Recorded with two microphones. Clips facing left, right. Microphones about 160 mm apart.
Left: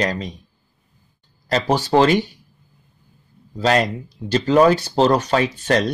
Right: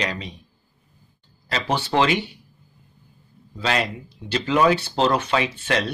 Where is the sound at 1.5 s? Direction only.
40° left (ahead or behind).